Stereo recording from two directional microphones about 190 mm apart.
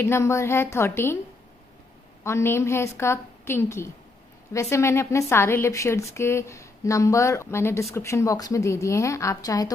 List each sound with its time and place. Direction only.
0.0 s speech: 15° left (ahead or behind)
2.2 s speech: 15° left (ahead or behind)